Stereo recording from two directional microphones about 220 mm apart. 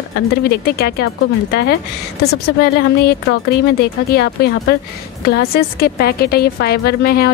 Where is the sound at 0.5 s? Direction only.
45° left (ahead or behind).